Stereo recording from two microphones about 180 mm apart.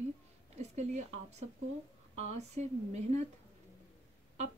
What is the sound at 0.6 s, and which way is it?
Speech, 40° right (ahead or behind).